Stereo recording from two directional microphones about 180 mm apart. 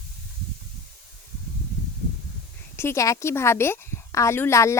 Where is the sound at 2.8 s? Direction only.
15° left (ahead or behind).